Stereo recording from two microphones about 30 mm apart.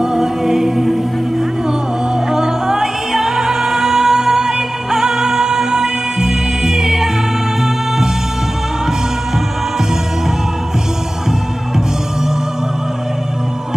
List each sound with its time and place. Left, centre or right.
0.0 s music: centre
2.3 s music: centre